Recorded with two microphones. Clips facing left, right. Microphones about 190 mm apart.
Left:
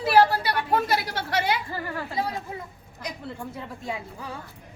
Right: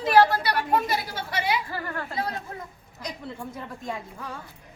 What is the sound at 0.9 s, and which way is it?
Speech, 70° left (ahead or behind).